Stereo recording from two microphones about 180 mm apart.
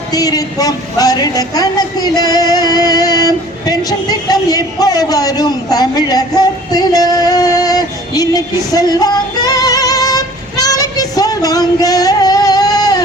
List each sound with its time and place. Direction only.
0.1 s a woman's voice: 20° left (ahead or behind)